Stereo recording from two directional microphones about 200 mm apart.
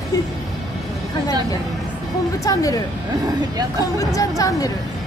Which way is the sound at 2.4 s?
15° left (ahead or behind).